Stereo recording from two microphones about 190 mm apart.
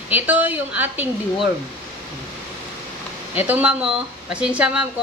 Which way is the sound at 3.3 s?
10° right (ahead or behind).